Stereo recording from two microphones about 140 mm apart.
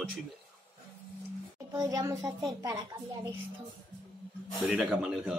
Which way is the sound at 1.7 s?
25° right (ahead or behind).